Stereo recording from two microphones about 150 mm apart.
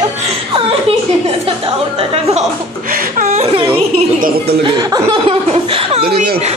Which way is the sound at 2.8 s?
70° right (ahead or behind).